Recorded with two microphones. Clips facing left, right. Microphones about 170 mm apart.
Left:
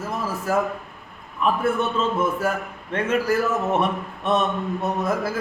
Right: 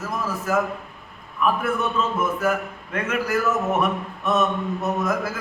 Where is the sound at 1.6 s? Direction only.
30° left (ahead or behind).